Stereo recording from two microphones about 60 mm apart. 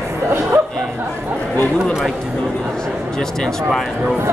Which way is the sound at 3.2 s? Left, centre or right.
Centre.